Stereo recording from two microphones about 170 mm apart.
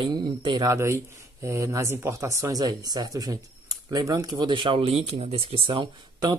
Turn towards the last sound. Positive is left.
turn(degrees=-25)  # may be behind; listen again after turning